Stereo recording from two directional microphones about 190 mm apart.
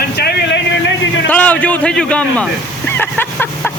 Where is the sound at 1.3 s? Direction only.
5° left (ahead or behind).